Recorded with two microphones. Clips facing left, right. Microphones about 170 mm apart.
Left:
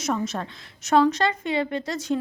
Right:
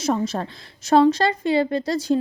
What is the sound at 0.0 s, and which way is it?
Speech, 30° right (ahead or behind).